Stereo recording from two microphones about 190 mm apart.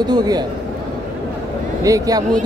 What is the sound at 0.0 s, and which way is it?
Speech, 20° right (ahead or behind).